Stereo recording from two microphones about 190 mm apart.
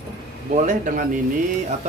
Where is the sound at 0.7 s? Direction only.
40° right (ahead or behind).